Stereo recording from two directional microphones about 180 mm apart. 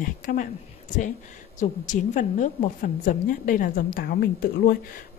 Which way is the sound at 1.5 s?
45° left (ahead or behind).